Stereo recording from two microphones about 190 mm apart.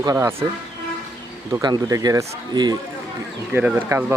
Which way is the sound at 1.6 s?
20° right (ahead or behind).